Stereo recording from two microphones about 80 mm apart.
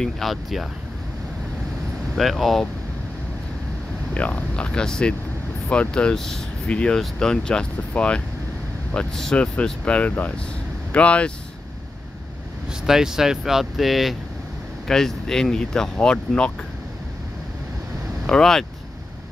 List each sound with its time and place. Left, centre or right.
0.0 s speech: centre
2.1 s speech: centre
4.1 s speech: centre
9.8 s speech: centre
12.8 s speech: centre
18.2 s speech: centre